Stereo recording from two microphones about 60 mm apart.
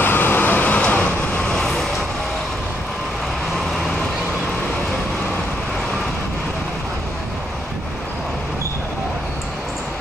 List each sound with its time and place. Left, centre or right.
0.0 s vehicle: left